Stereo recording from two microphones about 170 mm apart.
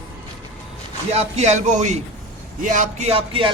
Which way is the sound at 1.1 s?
40° right (ahead or behind).